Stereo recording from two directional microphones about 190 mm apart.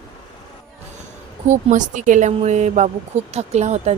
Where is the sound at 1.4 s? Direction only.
40° right (ahead or behind).